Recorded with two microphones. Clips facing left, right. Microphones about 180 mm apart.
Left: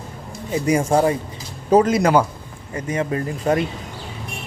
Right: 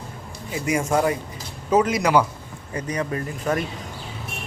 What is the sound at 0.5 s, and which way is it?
Speech, 35° left (ahead or behind).